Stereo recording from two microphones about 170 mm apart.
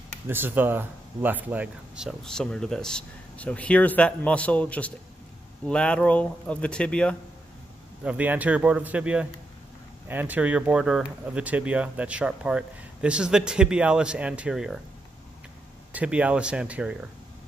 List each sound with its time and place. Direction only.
0.3 s speech: 10° right (ahead or behind); by 7.2 s 5° left (ahead or behind)
8.0 s speech: 10° right (ahead or behind)
15.9 s speech: 10° right (ahead or behind)